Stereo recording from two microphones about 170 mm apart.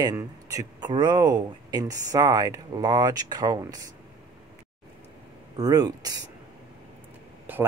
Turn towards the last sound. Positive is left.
turn(degrees=-10)  # may be behind; listen again after turning